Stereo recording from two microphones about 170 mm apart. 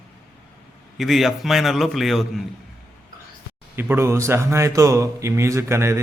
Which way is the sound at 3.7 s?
15° right (ahead or behind).